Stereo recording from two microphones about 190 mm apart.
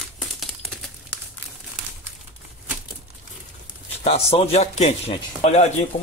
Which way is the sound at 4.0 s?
30° left (ahead or behind).